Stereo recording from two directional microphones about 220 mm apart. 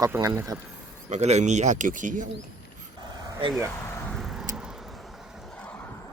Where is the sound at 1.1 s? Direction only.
30° right (ahead or behind).